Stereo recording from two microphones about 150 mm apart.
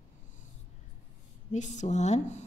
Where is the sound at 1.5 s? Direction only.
50° left (ahead or behind).